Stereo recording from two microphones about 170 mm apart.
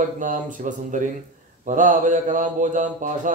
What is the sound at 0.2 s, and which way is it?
Mantra, 50° right (ahead or behind).